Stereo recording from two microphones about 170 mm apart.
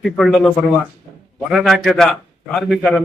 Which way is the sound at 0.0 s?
Centre (ahead or behind).